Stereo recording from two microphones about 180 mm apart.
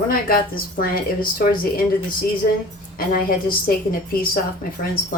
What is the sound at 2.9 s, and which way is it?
A woman's voice, 50° left (ahead or behind).